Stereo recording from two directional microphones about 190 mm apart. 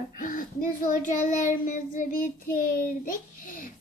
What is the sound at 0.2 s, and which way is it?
Speech, 45° left (ahead or behind).